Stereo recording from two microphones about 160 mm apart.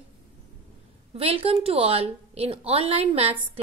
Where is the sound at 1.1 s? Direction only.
40° right (ahead or behind).